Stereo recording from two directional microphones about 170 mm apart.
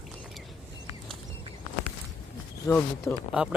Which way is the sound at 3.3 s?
5° right (ahead or behind).